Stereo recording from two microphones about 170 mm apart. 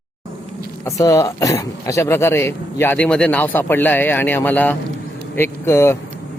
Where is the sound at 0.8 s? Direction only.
20° left (ahead or behind).